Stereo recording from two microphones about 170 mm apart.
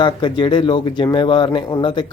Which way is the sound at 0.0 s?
30° left (ahead or behind).